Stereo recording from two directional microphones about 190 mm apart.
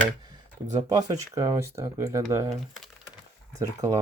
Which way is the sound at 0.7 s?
20° right (ahead or behind).